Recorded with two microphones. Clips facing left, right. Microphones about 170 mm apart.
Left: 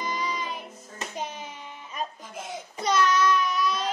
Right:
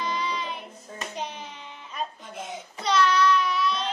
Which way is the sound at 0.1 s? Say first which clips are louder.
Right 1 dB; 45° left (ahead or behind).